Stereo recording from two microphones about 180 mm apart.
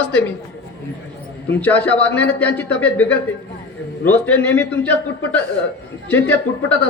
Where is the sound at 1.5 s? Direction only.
10° left (ahead or behind).